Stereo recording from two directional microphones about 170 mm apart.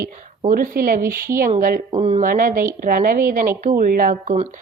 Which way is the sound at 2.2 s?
55° right (ahead or behind).